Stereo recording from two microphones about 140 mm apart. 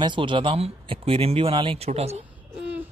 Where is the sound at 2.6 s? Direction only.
10° right (ahead or behind).